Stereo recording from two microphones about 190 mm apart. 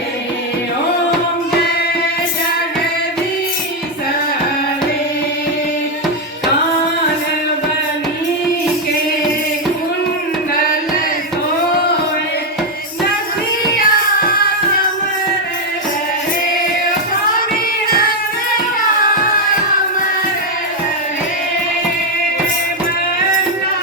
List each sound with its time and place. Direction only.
13.7 s music: 50° left (ahead or behind)
17.8 s music: 50° left (ahead or behind)